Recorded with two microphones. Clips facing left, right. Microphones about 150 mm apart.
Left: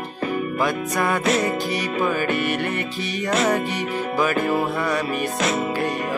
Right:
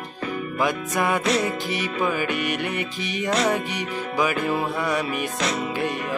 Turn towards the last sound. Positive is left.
turn(degrees=45)  # may be behind; listen again after turning